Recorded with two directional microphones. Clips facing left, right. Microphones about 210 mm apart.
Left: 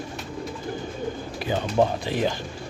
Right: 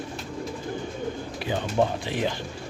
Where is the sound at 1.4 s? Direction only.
45° left (ahead or behind).